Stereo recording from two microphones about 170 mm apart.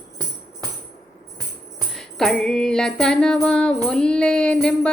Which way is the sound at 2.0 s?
5° left (ahead or behind).